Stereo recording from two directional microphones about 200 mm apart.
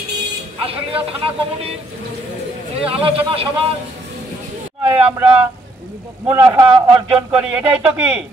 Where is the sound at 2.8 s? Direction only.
30° right (ahead or behind).